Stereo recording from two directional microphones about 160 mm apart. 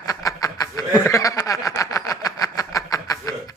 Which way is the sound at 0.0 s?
20° left (ahead or behind).